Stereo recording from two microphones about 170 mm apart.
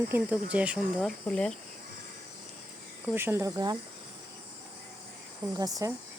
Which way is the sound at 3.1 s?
15° right (ahead or behind).